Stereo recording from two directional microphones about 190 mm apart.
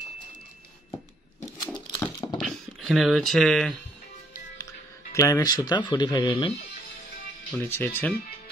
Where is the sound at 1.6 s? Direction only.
5° left (ahead or behind).